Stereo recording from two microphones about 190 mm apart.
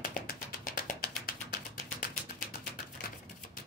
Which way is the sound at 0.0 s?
50° left (ahead or behind).